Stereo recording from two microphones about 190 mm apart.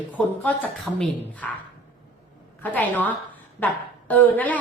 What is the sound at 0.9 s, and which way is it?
Speech, 5° left (ahead or behind).